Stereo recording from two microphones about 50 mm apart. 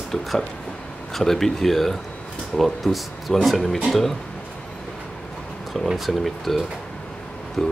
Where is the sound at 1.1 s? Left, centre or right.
Centre.